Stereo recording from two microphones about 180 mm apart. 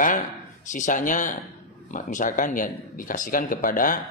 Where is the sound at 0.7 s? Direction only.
45° left (ahead or behind).